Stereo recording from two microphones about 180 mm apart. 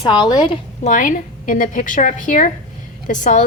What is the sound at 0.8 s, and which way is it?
A woman's voice, 45° left (ahead or behind).